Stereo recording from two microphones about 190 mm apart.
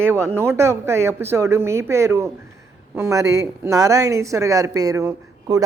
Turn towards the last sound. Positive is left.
turn(degrees=-15)  # may be behind; listen again after turning